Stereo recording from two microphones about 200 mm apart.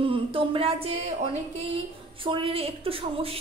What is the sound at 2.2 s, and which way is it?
A woman's voice, 30° right (ahead or behind).